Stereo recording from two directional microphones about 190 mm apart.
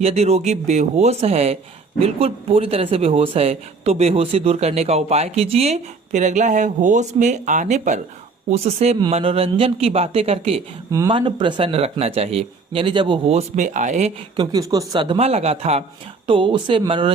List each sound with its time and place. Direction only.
0.0 s speech: 35° right (ahead or behind)
14.3 s speech: 20° right (ahead or behind)